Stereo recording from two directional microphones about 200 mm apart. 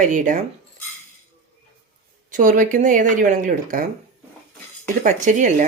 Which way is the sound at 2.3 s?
40° right (ahead or behind).